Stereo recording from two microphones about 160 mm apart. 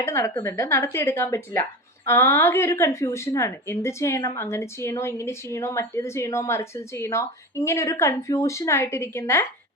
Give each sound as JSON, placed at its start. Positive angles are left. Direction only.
{"t": 0.0, "sound": "a woman's voice", "side_deg": 15}